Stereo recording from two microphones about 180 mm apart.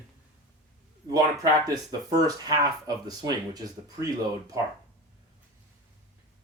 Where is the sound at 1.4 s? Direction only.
20° right (ahead or behind).